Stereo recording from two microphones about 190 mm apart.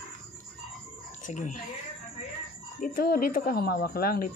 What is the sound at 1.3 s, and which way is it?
Speech, 40° left (ahead or behind).